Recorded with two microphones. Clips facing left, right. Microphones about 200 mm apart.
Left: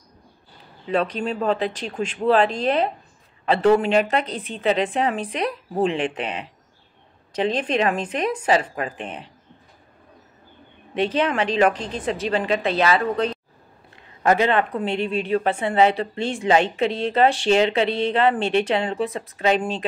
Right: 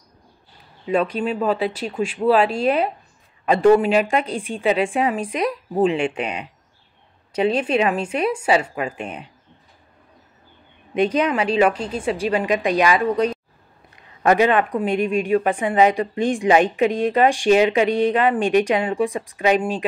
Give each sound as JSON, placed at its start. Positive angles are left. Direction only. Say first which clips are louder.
{"t": 0.8, "sound": "a woman's voice", "louder": "right 2 dB", "side_deg": -10}
{"t": 7.3, "sound": "a woman's voice", "louder": "right 3 dB", "side_deg": -10}
{"t": 11.0, "sound": "a woman's voice", "louder": "right 2 dB", "side_deg": -10}